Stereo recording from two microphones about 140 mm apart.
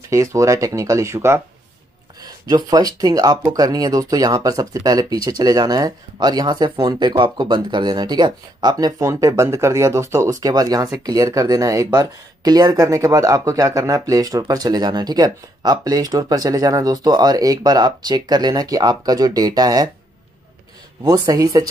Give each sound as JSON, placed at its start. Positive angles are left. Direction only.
{"t": 0.1, "sound": "speech", "side_deg": -20}
{"t": 21.0, "sound": "speech", "side_deg": -25}